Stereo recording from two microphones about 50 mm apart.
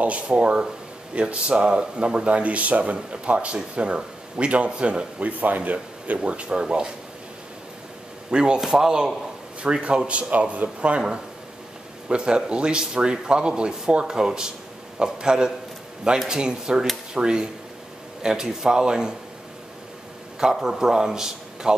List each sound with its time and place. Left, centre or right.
0.0 s speech: right
6.1 s speech: right
8.3 s speech: centre
8.5 s speech: centre
20.3 s a man's voice: centre